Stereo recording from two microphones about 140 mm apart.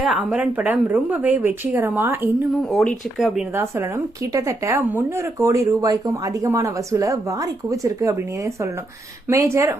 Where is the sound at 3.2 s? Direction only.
Centre (ahead or behind).